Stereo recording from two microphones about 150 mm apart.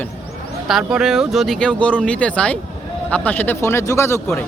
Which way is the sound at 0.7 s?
5° right (ahead or behind).